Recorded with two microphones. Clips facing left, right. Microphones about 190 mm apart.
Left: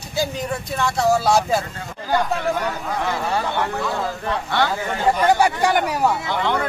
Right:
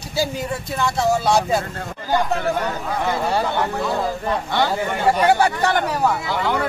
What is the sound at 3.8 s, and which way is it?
Speech, 20° right (ahead or behind).